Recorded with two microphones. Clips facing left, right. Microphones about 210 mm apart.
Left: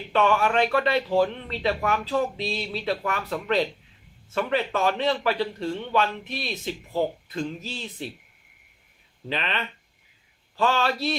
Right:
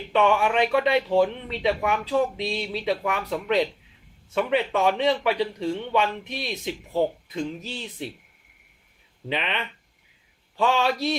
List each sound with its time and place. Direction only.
0.1 s speech: 15° right (ahead or behind)
9.3 s speech: 15° right (ahead or behind)
10.6 s speech: 15° right (ahead or behind)